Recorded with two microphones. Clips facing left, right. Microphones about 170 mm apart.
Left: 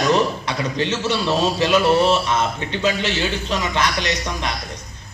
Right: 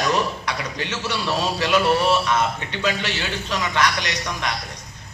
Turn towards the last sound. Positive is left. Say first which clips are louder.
# left 3 dB
turn(degrees=20)  # may be behind; listen again after turning